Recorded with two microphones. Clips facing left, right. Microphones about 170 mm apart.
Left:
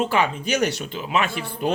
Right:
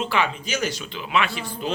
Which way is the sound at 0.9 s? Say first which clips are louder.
Left 1 dB; 40° left (ahead or behind).